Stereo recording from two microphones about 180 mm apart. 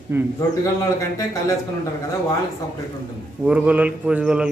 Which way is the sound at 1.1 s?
20° left (ahead or behind).